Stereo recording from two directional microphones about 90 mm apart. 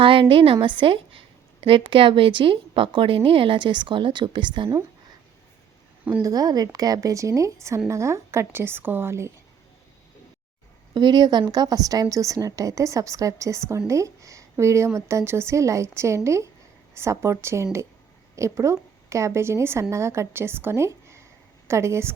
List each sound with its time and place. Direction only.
0.0 s a woman's voice: 75° right (ahead or behind); by 4.8 s 60° right (ahead or behind)
6.2 s a woman's voice: 45° right (ahead or behind); by 9.3 s 30° right (ahead or behind)
10.9 s a woman's voice: 50° right (ahead or behind); by 22.1 s 30° right (ahead or behind)